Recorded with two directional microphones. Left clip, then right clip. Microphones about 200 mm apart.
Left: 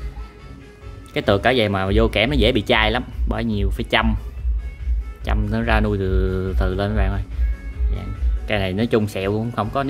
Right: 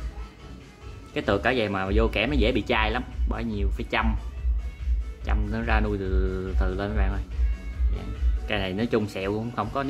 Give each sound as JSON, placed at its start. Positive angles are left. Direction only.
{"t": 1.1, "sound": "speech", "side_deg": 30}
{"t": 5.2, "sound": "speech", "side_deg": 30}
{"t": 8.5, "sound": "speech", "side_deg": 25}